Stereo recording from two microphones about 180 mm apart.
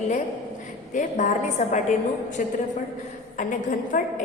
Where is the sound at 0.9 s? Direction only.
45° left (ahead or behind).